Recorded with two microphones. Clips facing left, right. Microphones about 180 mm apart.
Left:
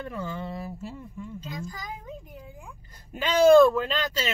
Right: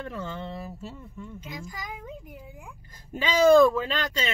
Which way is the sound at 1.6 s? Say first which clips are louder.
Left 2 dB; 20° right (ahead or behind).